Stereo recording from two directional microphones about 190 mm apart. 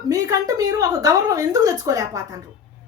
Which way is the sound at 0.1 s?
20° right (ahead or behind).